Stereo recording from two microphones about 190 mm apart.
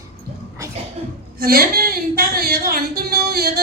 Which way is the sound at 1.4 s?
50° right (ahead or behind).